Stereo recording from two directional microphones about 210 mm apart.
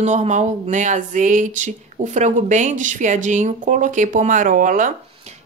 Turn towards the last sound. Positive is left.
turn(degrees=-40)  # may be behind; listen again after turning